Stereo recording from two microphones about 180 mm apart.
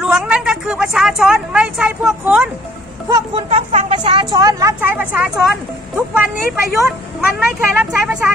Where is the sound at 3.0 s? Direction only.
25° right (ahead or behind); by 5.5 s 10° right (ahead or behind).